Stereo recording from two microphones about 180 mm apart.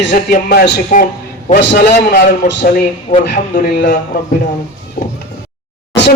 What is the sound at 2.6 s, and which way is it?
A man's voice, 45° left (ahead or behind).